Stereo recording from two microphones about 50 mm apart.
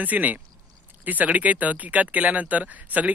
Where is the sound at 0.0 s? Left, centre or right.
Right.